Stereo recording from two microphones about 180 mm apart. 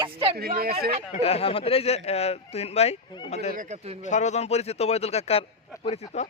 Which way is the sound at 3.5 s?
50° right (ahead or behind).